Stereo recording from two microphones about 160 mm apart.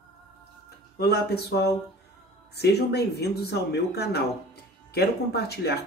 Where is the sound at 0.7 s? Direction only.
90° left.